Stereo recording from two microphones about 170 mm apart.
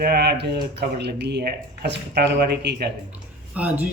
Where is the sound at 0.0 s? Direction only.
75° right (ahead or behind).